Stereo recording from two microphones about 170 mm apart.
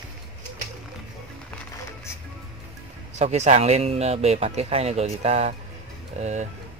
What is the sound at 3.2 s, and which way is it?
Speech, 40° right (ahead or behind).